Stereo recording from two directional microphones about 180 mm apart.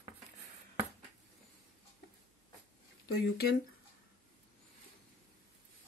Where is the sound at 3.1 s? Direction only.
60° left (ahead or behind).